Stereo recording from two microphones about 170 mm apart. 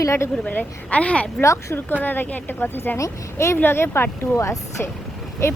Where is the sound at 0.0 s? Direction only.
15° left (ahead or behind).